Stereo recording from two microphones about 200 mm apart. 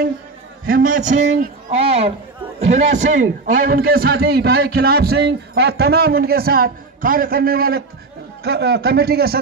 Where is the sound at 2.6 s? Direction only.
35° right (ahead or behind).